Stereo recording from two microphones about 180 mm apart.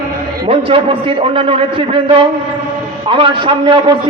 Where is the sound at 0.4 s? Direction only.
30° right (ahead or behind).